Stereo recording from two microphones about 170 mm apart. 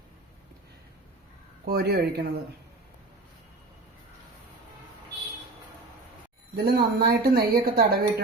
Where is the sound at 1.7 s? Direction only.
65° right (ahead or behind).